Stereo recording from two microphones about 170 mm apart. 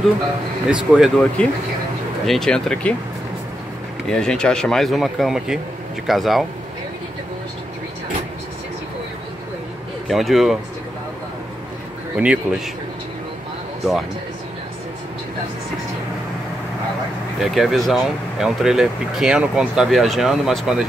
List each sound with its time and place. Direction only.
0.7 s speech: 5° right (ahead or behind)
2.2 s speech: centre (ahead or behind)
4.1 s speech: 5° left (ahead or behind)
10.0 s speech: centre (ahead or behind)
12.2 s speech: 5° right (ahead or behind)
17.4 s speech: centre (ahead or behind)